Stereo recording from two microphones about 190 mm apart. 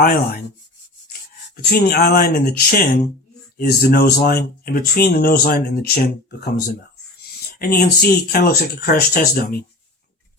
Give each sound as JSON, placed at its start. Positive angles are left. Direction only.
{"t": 0.0, "sound": "speech", "side_deg": 50}
{"t": 1.7, "sound": "speech", "side_deg": 50}
{"t": 7.7, "sound": "speech", "side_deg": 50}